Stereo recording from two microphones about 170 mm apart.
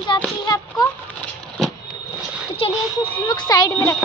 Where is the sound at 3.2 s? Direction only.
25° left (ahead or behind).